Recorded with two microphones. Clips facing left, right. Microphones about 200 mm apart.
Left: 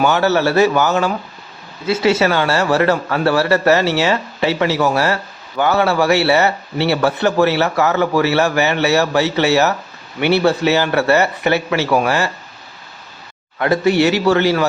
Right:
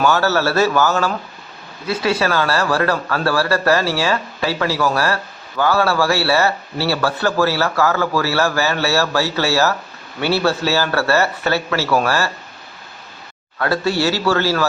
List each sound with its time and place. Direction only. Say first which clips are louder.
0.0 s a man's voice: left 2 dB; 20° left (ahead or behind)
13.6 s speech: left 4 dB; 20° left (ahead or behind)